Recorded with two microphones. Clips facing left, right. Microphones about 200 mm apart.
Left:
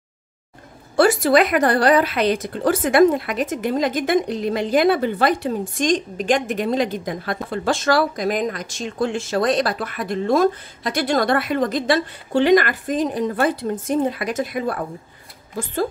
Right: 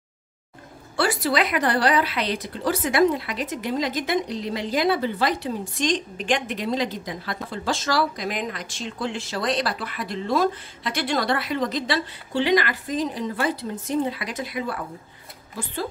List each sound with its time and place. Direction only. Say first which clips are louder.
0.9 s a woman's voice: left 8 dB; 45° left (ahead or behind)